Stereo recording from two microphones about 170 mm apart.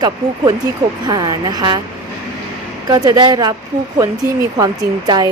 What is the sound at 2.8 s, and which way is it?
Speech, 20° right (ahead or behind).